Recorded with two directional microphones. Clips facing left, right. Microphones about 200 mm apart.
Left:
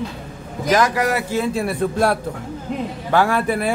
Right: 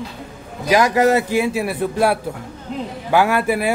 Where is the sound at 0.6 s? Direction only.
15° right (ahead or behind).